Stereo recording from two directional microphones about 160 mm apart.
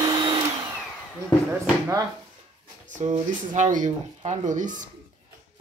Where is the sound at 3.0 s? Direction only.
45° right (ahead or behind).